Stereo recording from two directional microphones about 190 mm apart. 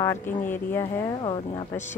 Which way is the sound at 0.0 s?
15° left (ahead or behind).